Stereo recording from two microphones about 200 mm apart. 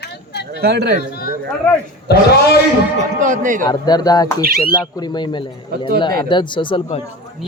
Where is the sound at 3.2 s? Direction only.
40° right (ahead or behind).